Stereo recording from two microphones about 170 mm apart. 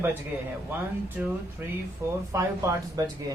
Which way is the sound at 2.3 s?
15° right (ahead or behind).